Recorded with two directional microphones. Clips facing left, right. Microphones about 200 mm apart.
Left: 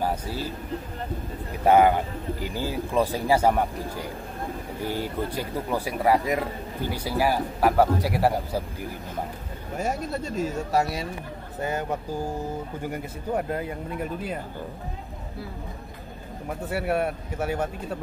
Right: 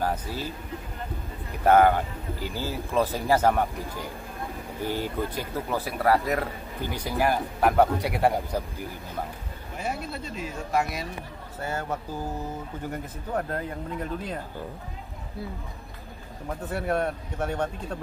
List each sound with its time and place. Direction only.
0.0 s speech: 10° left (ahead or behind)
1.6 s speech: 10° left (ahead or behind)
5.3 s speech: 10° left (ahead or behind)
9.8 s speech: 45° left (ahead or behind)
11.6 s speech: 15° left (ahead or behind)
16.4 s speech: 10° left (ahead or behind)